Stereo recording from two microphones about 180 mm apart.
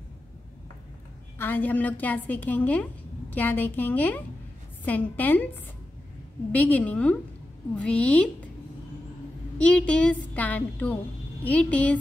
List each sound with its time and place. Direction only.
1.4 s a woman's voice: 10° left (ahead or behind)
6.5 s a woman's voice: 5° left (ahead or behind)
9.6 s a woman's voice: 5° left (ahead or behind)